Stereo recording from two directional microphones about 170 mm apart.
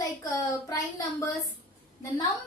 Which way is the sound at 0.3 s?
20° left (ahead or behind).